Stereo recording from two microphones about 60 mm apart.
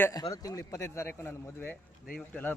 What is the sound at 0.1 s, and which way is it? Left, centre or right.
Speech, left.